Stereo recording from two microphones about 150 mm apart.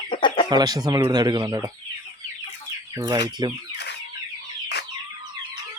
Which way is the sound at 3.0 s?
30° right (ahead or behind).